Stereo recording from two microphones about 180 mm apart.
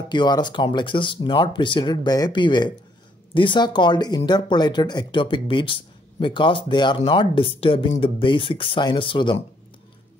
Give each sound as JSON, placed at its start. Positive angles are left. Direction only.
{"t": 0.1, "sound": "speech", "side_deg": 25}